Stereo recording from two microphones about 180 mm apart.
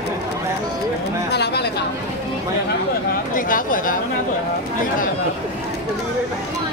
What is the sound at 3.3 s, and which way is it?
Speech, 50° left (ahead or behind).